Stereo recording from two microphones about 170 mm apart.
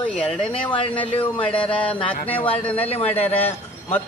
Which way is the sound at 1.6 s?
10° left (ahead or behind).